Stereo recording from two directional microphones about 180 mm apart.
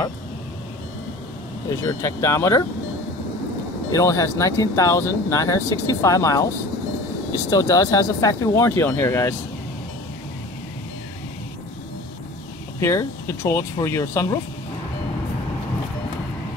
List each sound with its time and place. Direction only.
1.8 s speech: 15° left (ahead or behind)
3.9 s speech: 15° left (ahead or behind)
12.8 s speech: 15° left (ahead or behind)